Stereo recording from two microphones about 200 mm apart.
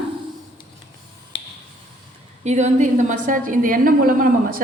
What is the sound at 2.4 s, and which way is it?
A woman's voice, 35° right (ahead or behind).